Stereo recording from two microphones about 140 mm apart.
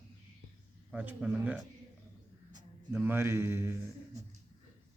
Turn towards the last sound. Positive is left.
turn(degrees=-20)  # may be behind; listen again after turning